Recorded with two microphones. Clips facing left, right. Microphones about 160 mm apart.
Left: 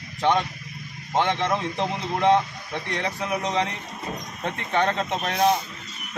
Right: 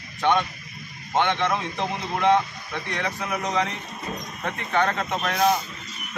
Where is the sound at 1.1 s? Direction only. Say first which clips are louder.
Even; 35° left (ahead or behind).